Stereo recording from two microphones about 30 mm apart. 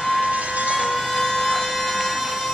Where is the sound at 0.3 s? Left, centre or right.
Right.